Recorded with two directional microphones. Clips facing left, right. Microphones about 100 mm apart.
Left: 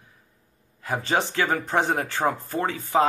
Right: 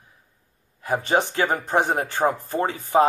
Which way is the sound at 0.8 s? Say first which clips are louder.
Right 3 dB; 15° right (ahead or behind).